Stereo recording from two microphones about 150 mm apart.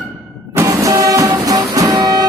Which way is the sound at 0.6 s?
20° right (ahead or behind).